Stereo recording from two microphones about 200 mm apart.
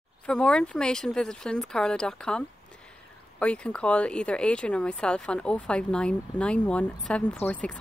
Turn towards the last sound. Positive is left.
turn(degrees=5)  # may be behind; listen again after turning